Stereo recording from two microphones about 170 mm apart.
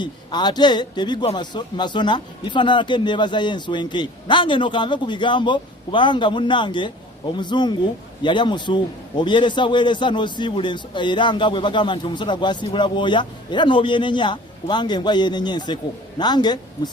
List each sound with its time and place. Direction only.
0.0 s a man's voice: 25° left (ahead or behind)